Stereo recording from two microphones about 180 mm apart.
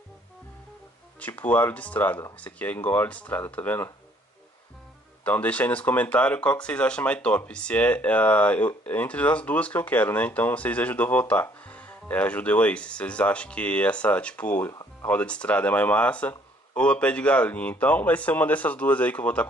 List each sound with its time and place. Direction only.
1.2 s speech: 10° left (ahead or behind)
5.2 s speech: 10° left (ahead or behind)
14.7 s music: 20° left (ahead or behind)
15.0 s speech: 5° left (ahead or behind)